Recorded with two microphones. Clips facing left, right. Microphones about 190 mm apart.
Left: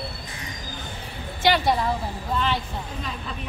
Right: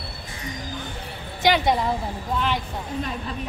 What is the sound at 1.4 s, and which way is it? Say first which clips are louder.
Speech: right 1 dB; 20° right (ahead or behind).